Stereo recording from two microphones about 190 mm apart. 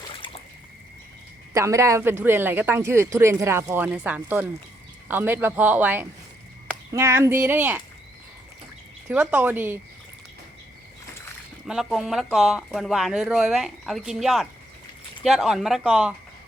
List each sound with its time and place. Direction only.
0.0 s trickle: 25° left (ahead or behind)
1.5 s speech: 15° right (ahead or behind)
9.0 s speech: 10° right (ahead or behind)
11.6 s speech: centre (ahead or behind)